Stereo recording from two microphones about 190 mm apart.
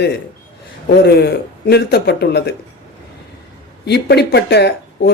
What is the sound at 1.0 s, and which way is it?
Speech, 60° left (ahead or behind).